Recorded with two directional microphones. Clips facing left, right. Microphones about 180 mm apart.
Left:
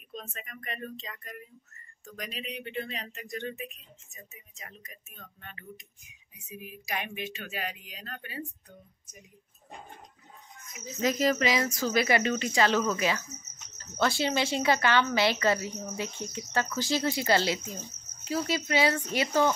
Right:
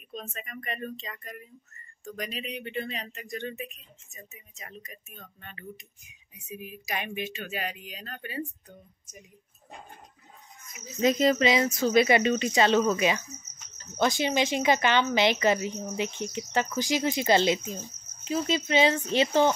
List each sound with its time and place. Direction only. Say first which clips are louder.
0.1 s a woman's voice: right 3 dB; centre (ahead or behind)
11.0 s a woman's voice: right 4 dB; 20° right (ahead or behind)